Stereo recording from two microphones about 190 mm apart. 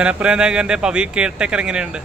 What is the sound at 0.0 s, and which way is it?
Speech, 5° right (ahead or behind).